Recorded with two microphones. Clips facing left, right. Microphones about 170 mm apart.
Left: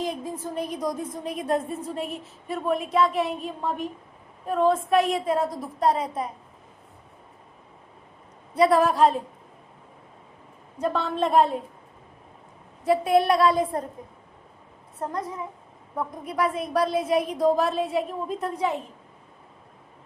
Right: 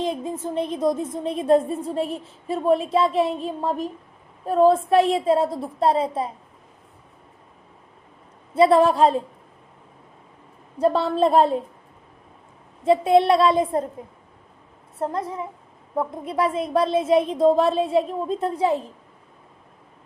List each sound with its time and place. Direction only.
0.0 s a woman's voice: 25° right (ahead or behind)
8.5 s a woman's voice: 25° right (ahead or behind)
10.8 s a woman's voice: 35° right (ahead or behind)
12.8 s a woman's voice: 25° right (ahead or behind)
15.0 s a woman's voice: 30° right (ahead or behind)